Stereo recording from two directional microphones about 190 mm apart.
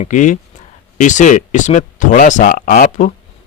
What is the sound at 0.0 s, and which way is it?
Speech, 40° left (ahead or behind).